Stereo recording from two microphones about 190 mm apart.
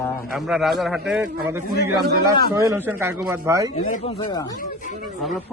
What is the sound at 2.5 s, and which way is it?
Speech, 15° right (ahead or behind).